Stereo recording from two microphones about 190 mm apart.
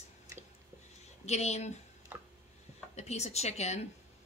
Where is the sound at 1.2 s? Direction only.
35° left (ahead or behind).